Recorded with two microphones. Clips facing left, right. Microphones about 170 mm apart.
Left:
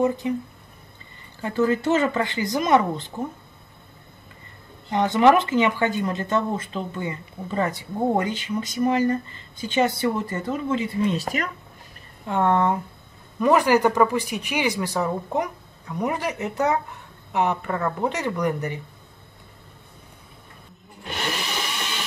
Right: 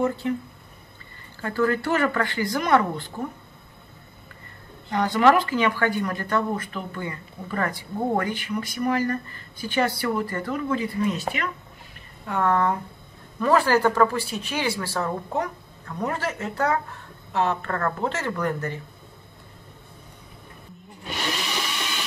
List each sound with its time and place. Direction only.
0.0 s speech: 15° left (ahead or behind)
1.4 s speech: 20° left (ahead or behind)
4.9 s speech: 20° left (ahead or behind)
12.3 s speech: 25° left (ahead or behind)